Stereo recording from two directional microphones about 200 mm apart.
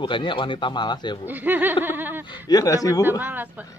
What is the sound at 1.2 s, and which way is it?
A woman's voice, 10° right (ahead or behind).